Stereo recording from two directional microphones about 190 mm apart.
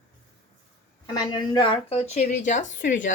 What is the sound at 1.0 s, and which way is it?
A woman's voice, 20° left (ahead or behind).